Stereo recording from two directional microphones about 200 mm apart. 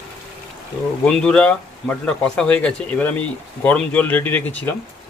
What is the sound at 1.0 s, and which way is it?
A man's voice, 5° left (ahead or behind).